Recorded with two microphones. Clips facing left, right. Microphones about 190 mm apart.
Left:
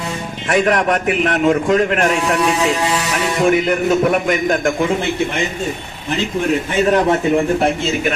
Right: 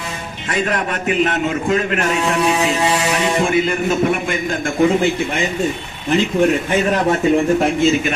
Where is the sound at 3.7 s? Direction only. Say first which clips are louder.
Left 2 dB; 70° left (ahead or behind).